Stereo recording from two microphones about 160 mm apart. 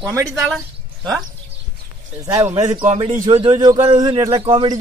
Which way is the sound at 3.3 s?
35° right (ahead or behind).